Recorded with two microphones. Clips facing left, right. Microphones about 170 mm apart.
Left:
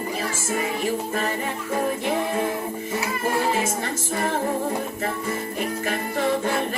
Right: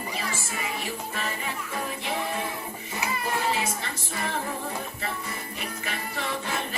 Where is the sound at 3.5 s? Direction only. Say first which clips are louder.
Left 5 dB; 45° left (ahead or behind).